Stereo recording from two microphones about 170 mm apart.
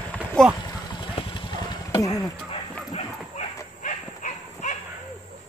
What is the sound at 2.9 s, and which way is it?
Dog, 45° left (ahead or behind).